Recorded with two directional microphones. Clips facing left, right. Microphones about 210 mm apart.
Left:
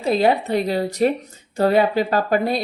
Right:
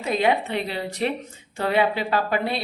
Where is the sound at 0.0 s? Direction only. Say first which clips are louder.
Left 4 dB; 35° left (ahead or behind).